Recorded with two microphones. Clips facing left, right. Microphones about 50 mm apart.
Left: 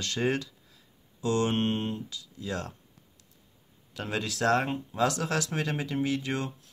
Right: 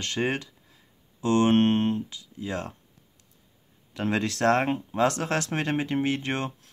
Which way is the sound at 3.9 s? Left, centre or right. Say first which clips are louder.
Right 6 dB; right.